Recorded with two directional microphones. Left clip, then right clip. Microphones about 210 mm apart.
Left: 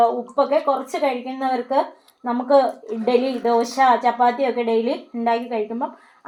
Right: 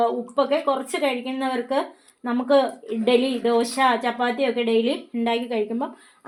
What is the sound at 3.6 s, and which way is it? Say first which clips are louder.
A woman's voice: left 7 dB; 50° right (ahead or behind).